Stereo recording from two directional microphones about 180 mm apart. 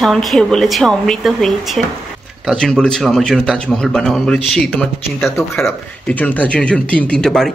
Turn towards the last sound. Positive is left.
turn(degrees=5)  # may be behind; listen again after turning